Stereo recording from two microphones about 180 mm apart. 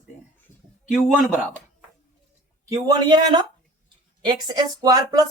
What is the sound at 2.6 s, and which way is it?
Speech, 20° right (ahead or behind).